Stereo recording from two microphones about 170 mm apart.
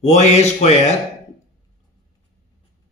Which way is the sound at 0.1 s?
40° left (ahead or behind).